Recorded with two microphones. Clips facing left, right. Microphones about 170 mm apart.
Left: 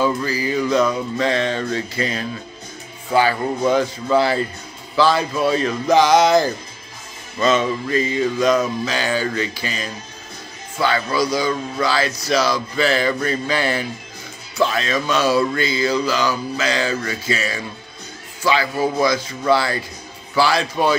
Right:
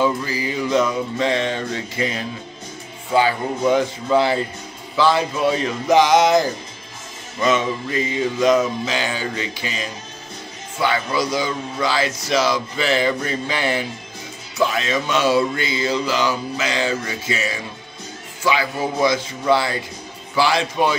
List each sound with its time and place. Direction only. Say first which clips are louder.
0.0 s speech: left 1 dB; 20° right (ahead or behind)